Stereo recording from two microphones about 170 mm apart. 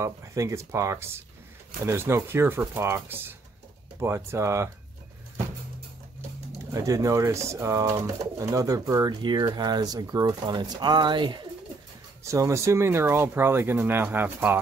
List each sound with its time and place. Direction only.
0.0 s speech: 15° right (ahead or behind)
6.7 s speech: 20° right (ahead or behind)